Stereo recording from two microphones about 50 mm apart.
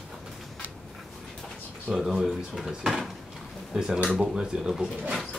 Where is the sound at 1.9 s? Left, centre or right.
Centre.